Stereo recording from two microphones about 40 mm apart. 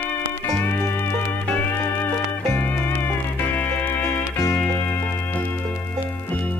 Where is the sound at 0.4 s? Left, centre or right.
Left.